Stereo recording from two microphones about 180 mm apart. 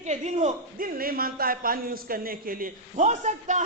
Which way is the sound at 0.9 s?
55° right (ahead or behind).